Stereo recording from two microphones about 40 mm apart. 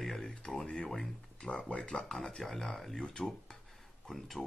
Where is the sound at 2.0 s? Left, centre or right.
Centre.